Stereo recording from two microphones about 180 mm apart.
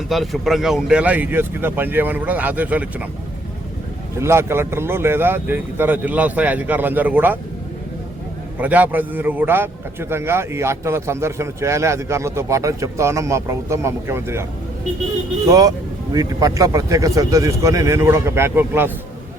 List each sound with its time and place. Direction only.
0.1 s a man's voice: centre (ahead or behind)
4.2 s a man's voice: 15° right (ahead or behind)
8.5 s a man's voice: 10° right (ahead or behind)
15.4 s a man's voice: 20° right (ahead or behind)